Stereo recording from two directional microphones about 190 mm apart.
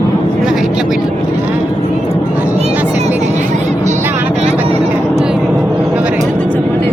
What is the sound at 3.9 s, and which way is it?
Vehicle, 10° right (ahead or behind).